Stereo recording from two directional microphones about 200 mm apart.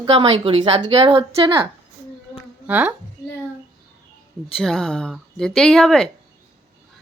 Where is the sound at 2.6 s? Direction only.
10° right (ahead or behind).